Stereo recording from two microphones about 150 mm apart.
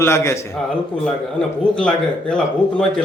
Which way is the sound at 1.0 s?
5° left (ahead or behind).